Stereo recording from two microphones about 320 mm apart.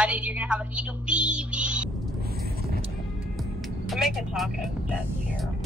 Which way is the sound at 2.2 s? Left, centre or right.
Right.